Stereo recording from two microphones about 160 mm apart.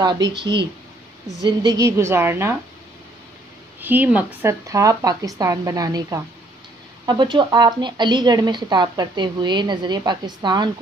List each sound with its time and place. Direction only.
0.0 s a woman's voice: 25° right (ahead or behind)
1.4 s a woman's voice: 25° right (ahead or behind)
3.8 s a woman's voice: 10° right (ahead or behind); by 10.7 s 25° right (ahead or behind)